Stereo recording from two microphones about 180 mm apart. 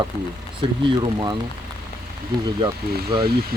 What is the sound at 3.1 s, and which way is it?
Speech, 25° right (ahead or behind).